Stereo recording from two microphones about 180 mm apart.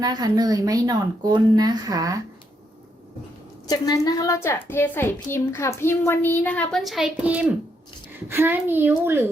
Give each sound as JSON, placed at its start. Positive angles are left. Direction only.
{"t": 0.0, "sound": "speech", "side_deg": -20}
{"t": 3.7, "sound": "a woman's voice", "side_deg": 20}